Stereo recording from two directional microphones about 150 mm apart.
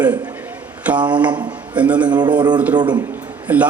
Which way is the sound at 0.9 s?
10° right (ahead or behind).